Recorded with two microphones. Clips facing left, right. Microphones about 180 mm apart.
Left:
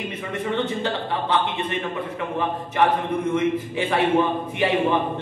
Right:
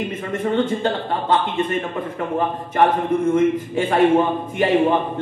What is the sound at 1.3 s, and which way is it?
A man's voice, 45° right (ahead or behind).